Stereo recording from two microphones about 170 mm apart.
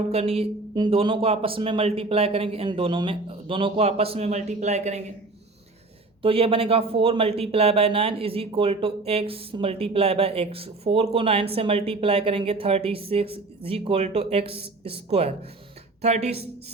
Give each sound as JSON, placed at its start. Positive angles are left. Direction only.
{"t": 0.1, "sound": "speech", "side_deg": -35}
{"t": 6.2, "sound": "speech", "side_deg": -35}